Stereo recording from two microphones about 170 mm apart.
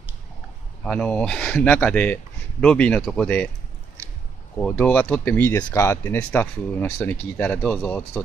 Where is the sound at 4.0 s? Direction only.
15° right (ahead or behind).